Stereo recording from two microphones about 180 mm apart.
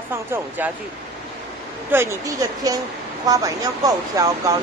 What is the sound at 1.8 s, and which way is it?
Speech, 15° right (ahead or behind).